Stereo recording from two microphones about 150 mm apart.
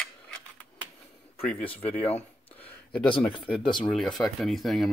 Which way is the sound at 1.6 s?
40° left (ahead or behind).